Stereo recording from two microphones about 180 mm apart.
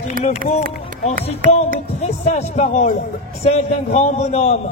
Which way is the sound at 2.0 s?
35° left (ahead or behind).